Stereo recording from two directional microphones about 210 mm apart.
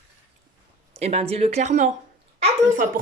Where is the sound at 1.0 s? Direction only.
30° right (ahead or behind).